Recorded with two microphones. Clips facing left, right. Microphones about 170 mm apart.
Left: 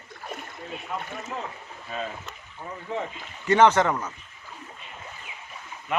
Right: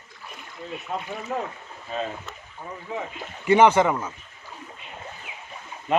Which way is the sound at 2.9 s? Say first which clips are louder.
Left 1 dB; 10° right (ahead or behind).